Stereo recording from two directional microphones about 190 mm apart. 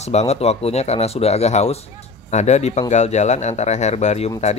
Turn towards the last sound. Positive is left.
turn(degrees=35)  # may be behind; listen again after turning